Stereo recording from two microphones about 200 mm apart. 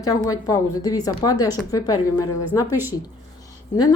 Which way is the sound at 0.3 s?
15° left (ahead or behind).